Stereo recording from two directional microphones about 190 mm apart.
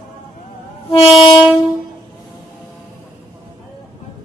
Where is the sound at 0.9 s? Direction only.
25° left (ahead or behind).